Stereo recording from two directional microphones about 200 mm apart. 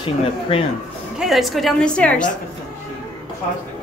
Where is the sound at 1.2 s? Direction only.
Centre (ahead or behind).